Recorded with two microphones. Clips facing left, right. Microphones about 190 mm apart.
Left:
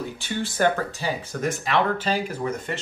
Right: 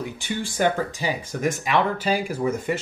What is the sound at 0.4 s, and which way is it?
Speech, 15° right (ahead or behind).